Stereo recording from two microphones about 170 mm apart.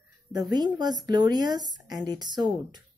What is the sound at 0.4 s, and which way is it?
A woman's voice, 25° right (ahead or behind).